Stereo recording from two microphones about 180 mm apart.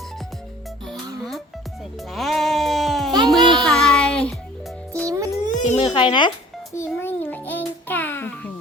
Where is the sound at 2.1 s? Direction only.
Centre (ahead or behind).